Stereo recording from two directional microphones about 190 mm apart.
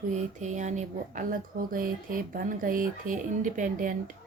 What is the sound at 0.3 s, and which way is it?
Speech, 40° right (ahead or behind).